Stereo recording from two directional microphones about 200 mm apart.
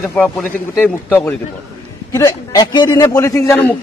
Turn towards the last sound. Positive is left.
turn(degrees=15)  # may be behind; listen again after turning